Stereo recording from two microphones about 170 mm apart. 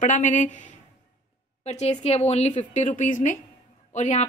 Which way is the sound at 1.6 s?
40° left (ahead or behind).